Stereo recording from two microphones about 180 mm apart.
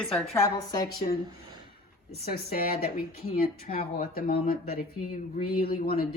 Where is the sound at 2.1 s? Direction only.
55° left (ahead or behind).